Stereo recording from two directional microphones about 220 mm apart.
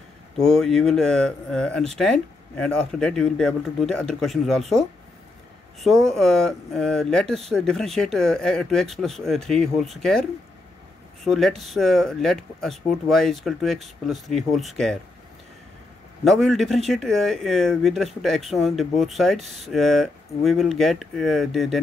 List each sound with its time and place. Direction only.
0.4 s speech: centre (ahead or behind)
5.8 s speech: centre (ahead or behind)
11.2 s speech: centre (ahead or behind)
16.3 s speech: centre (ahead or behind)